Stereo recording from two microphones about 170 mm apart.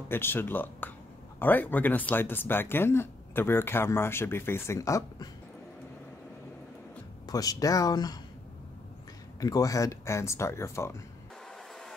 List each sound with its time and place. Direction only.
0.1 s speech: 15° left (ahead or behind)
7.2 s speech: 20° left (ahead or behind)
9.4 s speech: 20° left (ahead or behind)